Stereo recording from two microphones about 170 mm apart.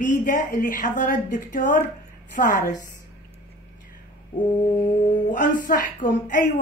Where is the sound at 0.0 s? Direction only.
50° left (ahead or behind).